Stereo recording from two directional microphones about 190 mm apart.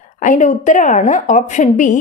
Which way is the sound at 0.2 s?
40° left (ahead or behind).